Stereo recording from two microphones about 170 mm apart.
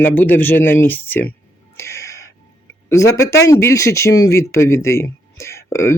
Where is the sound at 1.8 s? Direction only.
15° left (ahead or behind).